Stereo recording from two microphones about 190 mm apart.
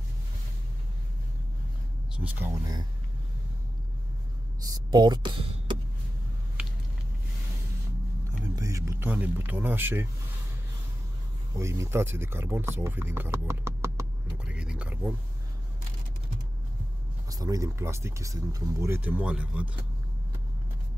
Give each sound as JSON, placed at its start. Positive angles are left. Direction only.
{"t": 2.1, "sound": "speech", "side_deg": -10}
{"t": 2.6, "sound": "speech", "side_deg": -20}
{"t": 4.7, "sound": "speech", "side_deg": -20}
{"t": 8.5, "sound": "speech", "side_deg": -15}
{"t": 11.5, "sound": "speech", "side_deg": -15}
{"t": 17.3, "sound": "speech", "side_deg": -20}